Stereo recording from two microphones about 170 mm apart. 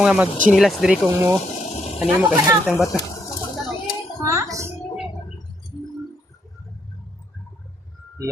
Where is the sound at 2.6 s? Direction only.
5° right (ahead or behind).